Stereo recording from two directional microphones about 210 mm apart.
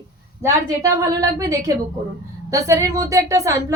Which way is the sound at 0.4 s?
15° right (ahead or behind).